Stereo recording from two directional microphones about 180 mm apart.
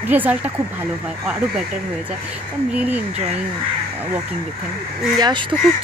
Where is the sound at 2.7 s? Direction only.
10° right (ahead or behind).